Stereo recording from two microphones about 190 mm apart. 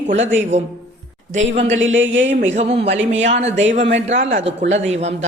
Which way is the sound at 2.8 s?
65° right (ahead or behind).